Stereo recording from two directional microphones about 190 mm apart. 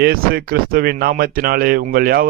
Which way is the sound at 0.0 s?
50° right (ahead or behind).